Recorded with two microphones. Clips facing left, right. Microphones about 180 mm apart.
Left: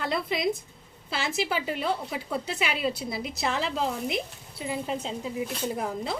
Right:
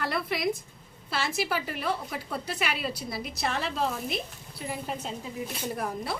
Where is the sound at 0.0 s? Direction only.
20° left (ahead or behind).